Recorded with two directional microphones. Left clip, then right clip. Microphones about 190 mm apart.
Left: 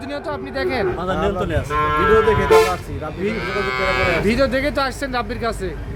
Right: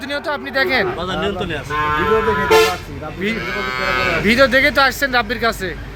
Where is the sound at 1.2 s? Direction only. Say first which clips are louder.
Left 1 dB; 60° left (ahead or behind).